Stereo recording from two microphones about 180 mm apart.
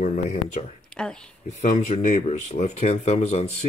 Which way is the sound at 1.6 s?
35° left (ahead or behind).